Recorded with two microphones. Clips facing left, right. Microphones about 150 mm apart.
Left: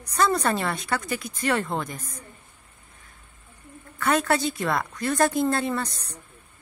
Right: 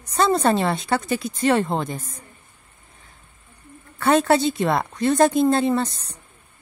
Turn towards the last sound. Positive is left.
turn(degrees=-25)  # may be behind; listen again after turning